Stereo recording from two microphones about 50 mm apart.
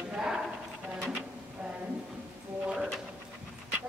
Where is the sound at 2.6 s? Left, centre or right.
Centre.